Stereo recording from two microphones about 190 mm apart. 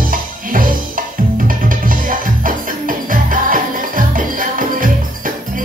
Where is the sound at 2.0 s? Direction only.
45° right (ahead or behind).